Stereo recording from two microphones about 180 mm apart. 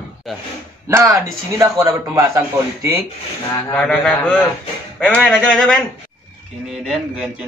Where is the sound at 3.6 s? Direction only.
5° left (ahead or behind).